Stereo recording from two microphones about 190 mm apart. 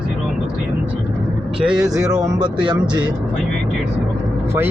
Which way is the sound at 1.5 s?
5° right (ahead or behind).